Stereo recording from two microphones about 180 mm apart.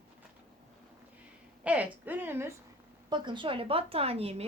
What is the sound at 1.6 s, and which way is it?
Speech, 5° right (ahead or behind).